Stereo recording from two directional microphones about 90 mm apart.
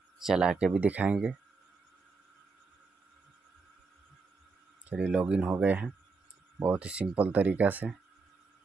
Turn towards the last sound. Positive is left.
turn(degrees=-20)  # may be behind; listen again after turning